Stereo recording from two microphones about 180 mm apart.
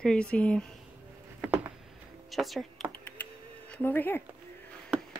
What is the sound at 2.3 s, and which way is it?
Speech, centre (ahead or behind).